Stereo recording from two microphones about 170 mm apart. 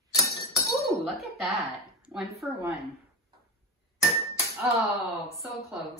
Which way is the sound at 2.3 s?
15° right (ahead or behind).